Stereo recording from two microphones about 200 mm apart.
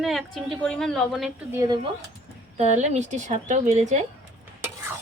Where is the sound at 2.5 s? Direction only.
35° right (ahead or behind).